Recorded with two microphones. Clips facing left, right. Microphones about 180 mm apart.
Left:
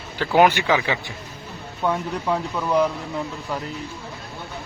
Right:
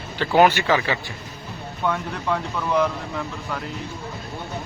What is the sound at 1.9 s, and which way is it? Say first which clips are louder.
Speech: left 2 dB; 15° left (ahead or behind).